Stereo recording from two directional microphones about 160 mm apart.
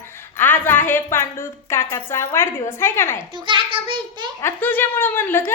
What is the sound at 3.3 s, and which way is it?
A child's voice, 30° right (ahead or behind).